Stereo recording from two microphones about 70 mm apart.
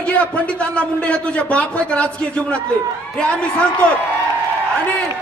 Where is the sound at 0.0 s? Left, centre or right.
Centre.